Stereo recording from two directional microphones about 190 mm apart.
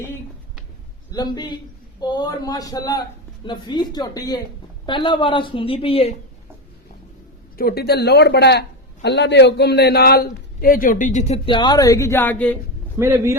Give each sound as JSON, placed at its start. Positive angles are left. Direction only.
{"t": 1.1, "sound": "a woman's voice", "side_deg": 20}
{"t": 7.5, "sound": "a man's voice", "side_deg": 50}
{"t": 13.0, "sound": "speech", "side_deg": -15}